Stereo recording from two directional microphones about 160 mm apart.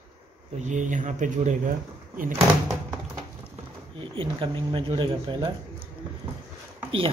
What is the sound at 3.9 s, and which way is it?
Speech, 30° right (ahead or behind).